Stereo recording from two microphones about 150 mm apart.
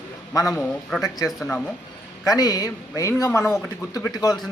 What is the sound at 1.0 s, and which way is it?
Speech, 20° left (ahead or behind).